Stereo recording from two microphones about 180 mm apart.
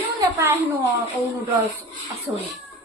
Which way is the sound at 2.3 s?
10° right (ahead or behind).